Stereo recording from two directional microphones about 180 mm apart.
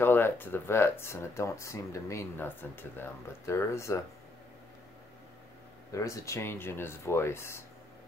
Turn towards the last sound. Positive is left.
turn(degrees=15)  # may be behind; listen again after turning